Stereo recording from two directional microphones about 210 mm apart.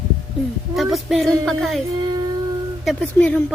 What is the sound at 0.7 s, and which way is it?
Speech, centre (ahead or behind).